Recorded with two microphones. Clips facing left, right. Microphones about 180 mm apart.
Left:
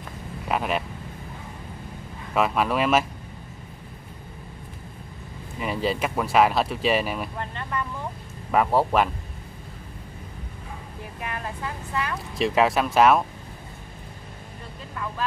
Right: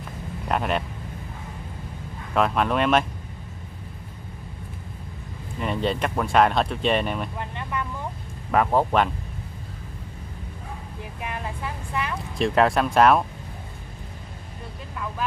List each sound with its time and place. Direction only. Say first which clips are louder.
0.5 s speech: right 1 dB; 5° left (ahead or behind)
2.3 s speech: right 1 dB; 5° left (ahead or behind)
5.6 s speech: right 1 dB; 5° left (ahead or behind)
7.3 s vehicle: even; 15° right (ahead or behind)
8.5 s speech: even; 5° left (ahead or behind)
11.1 s speech: even; 15° right (ahead or behind)
12.4 s speech: right 1 dB; centre (ahead or behind)